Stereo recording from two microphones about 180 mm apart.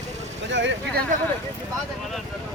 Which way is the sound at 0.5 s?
90° right.